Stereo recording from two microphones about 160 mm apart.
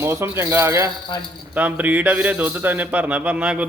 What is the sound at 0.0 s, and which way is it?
A man's voice, 15° right (ahead or behind).